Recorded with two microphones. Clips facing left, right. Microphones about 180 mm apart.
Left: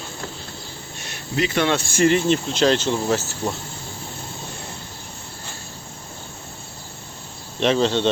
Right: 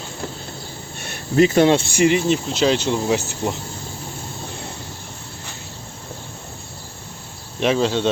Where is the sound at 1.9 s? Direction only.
10° right (ahead or behind).